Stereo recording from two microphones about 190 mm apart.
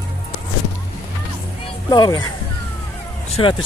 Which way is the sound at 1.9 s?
20° left (ahead or behind).